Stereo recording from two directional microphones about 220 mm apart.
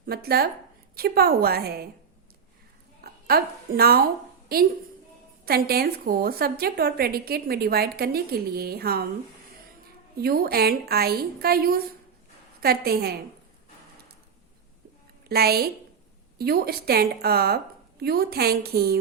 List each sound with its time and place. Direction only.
0.0 s a woman's voice: 45° right (ahead or behind)
3.0 s a woman's voice: 45° right (ahead or behind)
10.2 s a woman's voice: 45° right (ahead or behind)
15.3 s a woman's voice: 45° right (ahead or behind)